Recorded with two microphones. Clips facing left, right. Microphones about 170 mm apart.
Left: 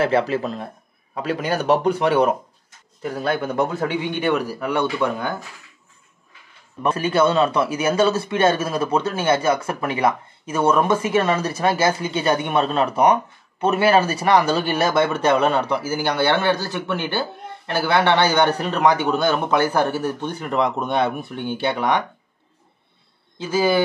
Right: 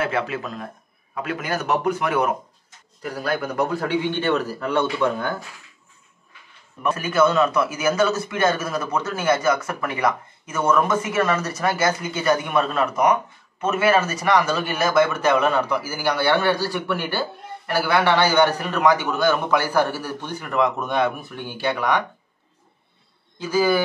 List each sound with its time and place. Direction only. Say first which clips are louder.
0.0 s a man's voice: left 5 dB; 30° left (ahead or behind); by 5.3 s 15° left (ahead or behind)
6.8 s speech: left 1 dB; 30° left (ahead or behind)
23.4 s speech: even; 25° left (ahead or behind)